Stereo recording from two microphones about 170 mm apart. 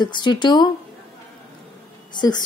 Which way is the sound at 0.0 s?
25° left (ahead or behind).